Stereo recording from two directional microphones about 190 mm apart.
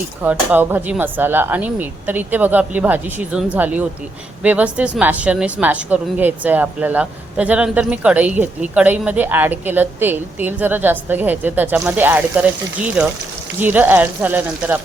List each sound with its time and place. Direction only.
0.2 s a woman's voice: 10° right (ahead or behind)